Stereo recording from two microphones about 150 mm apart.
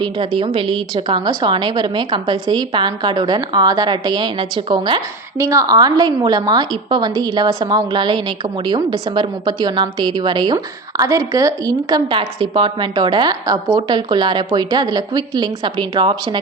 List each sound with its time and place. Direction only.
0.0 s a woman's voice: 35° right (ahead or behind)
5.4 s a woman's voice: 20° right (ahead or behind)